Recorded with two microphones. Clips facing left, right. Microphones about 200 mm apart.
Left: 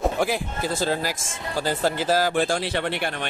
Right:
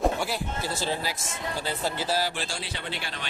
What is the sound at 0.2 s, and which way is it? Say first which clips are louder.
Speech: left 6 dB; 50° left (ahead or behind).